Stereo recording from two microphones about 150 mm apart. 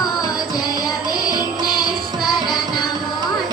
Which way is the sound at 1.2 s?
25° left (ahead or behind).